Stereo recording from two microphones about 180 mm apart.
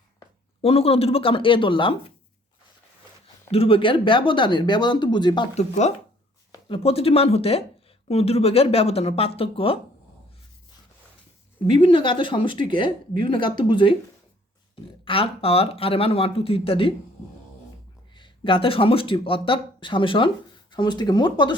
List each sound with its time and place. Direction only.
0.6 s speech: 35° left (ahead or behind)
3.5 s speech: 30° left (ahead or behind)
5.5 s speech: 40° left (ahead or behind)
11.6 s speech: 30° left (ahead or behind)
15.0 s speech: 30° left (ahead or behind)
18.1 s speech: 25° left (ahead or behind)